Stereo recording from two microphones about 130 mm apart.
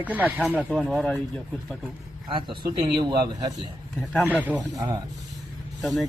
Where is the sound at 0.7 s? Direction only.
Centre (ahead or behind).